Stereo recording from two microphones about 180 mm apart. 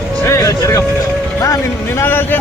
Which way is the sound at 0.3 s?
20° left (ahead or behind).